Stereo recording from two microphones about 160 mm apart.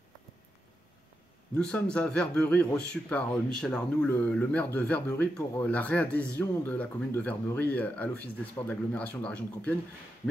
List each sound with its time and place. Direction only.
1.6 s speech: 5° left (ahead or behind)